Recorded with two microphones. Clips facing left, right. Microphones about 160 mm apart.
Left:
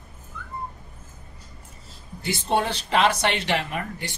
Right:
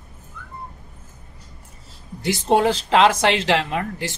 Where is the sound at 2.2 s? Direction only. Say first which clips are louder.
Right 6 dB; 90° right.